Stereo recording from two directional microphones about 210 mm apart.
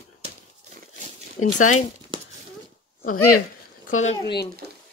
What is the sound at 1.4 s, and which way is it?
Speech, 35° left (ahead or behind).